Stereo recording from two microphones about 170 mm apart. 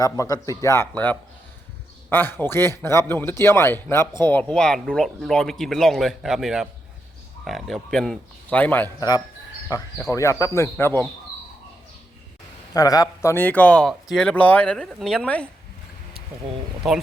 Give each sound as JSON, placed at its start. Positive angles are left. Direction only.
{"t": 0.0, "sound": "a man's voice", "side_deg": 20}
{"t": 9.0, "sound": "a man's voice", "side_deg": 25}
{"t": 12.7, "sound": "a man's voice", "side_deg": 20}